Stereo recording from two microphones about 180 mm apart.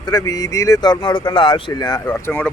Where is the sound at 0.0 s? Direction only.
20° left (ahead or behind).